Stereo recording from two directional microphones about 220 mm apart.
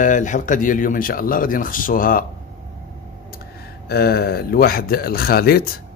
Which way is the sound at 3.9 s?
45° left (ahead or behind).